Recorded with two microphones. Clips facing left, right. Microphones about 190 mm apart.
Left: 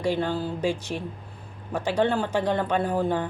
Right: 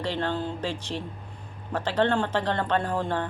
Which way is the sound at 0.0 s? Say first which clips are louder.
Left 3 dB; 10° left (ahead or behind).